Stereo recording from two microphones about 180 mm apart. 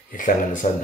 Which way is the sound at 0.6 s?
40° left (ahead or behind).